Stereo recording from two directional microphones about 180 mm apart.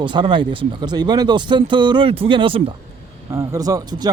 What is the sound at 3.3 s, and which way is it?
Speech, 15° right (ahead or behind).